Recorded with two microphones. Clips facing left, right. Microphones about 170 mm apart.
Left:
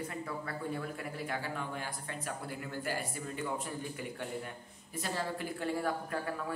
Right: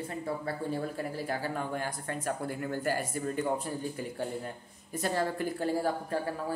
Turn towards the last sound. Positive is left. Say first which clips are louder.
# right 4 dB
turn(degrees=-35)  # may be behind; listen again after turning